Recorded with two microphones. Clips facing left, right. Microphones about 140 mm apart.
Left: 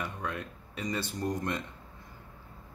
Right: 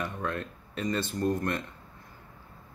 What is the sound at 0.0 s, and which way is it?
Speech, 10° left (ahead or behind).